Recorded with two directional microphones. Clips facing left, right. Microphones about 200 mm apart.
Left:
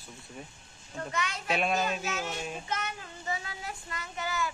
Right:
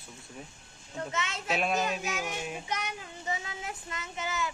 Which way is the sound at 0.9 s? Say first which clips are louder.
Even; 25° right (ahead or behind).